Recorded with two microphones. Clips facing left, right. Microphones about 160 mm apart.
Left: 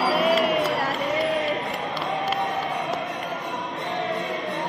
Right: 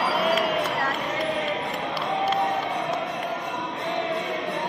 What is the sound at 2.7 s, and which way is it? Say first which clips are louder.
Music: even; centre (ahead or behind).